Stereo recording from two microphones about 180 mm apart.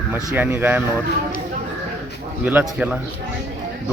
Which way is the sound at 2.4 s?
10° right (ahead or behind).